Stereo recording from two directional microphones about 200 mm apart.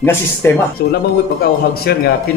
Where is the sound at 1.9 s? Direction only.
50° left (ahead or behind).